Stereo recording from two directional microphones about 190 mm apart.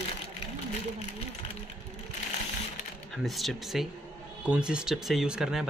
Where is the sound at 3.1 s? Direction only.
Centre (ahead or behind).